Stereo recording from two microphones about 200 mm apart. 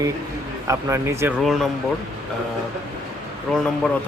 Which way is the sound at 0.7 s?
15° right (ahead or behind).